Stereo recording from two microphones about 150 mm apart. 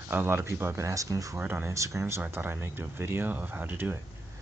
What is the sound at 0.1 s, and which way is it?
Speech, 15° right (ahead or behind).